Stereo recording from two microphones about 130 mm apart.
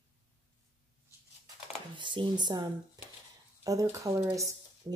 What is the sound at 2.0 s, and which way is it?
Speech, 40° right (ahead or behind).